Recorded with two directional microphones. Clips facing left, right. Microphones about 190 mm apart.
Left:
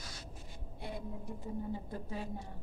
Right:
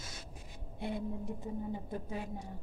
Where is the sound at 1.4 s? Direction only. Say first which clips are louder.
Right 1 dB; 20° right (ahead or behind).